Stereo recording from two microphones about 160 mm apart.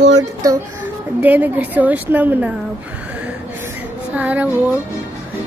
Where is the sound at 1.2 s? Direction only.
10° right (ahead or behind).